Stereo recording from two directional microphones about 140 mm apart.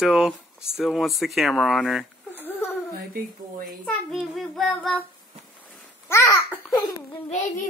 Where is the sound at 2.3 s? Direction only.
15° left (ahead or behind).